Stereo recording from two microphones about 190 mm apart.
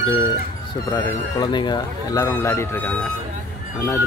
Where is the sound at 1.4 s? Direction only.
25° left (ahead or behind).